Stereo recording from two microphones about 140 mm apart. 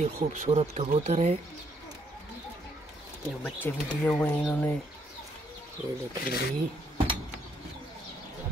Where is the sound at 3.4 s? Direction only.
15° left (ahead or behind).